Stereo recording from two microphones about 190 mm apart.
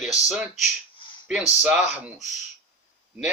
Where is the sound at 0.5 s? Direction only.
40° left (ahead or behind).